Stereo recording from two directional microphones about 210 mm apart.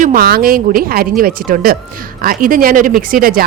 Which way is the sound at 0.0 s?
45° right (ahead or behind).